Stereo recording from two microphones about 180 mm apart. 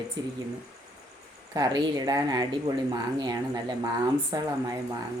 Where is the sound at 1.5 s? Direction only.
25° right (ahead or behind).